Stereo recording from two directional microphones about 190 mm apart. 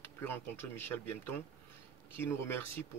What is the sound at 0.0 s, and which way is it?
Speech, 10° left (ahead or behind).